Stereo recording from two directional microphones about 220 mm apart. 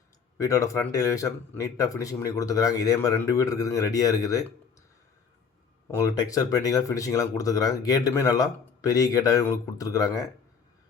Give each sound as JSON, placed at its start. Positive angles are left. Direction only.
{"t": 0.3, "sound": "speech", "side_deg": 15}
{"t": 5.9, "sound": "speech", "side_deg": 15}